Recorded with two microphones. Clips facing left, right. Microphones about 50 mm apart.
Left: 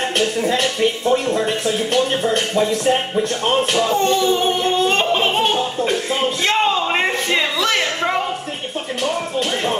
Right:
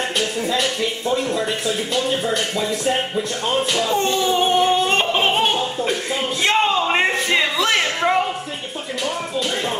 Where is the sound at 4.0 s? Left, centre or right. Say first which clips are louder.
Left 2 dB; centre.